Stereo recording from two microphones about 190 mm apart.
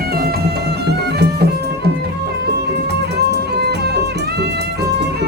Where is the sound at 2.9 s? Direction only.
60° right (ahead or behind).